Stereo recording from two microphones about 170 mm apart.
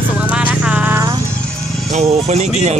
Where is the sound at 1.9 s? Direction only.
40° right (ahead or behind).